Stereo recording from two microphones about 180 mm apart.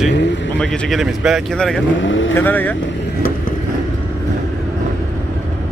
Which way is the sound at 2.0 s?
90° left.